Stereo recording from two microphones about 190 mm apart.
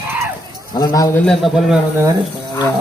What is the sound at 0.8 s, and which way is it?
Speech, 20° left (ahead or behind).